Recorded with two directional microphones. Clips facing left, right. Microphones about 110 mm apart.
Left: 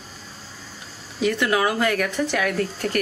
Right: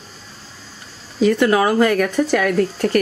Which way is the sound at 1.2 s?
40° right (ahead or behind).